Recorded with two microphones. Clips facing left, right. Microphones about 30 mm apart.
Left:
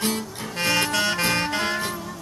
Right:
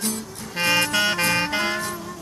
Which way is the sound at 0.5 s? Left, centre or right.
Centre.